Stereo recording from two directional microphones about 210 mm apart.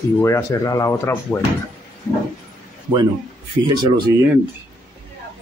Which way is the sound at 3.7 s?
20° right (ahead or behind).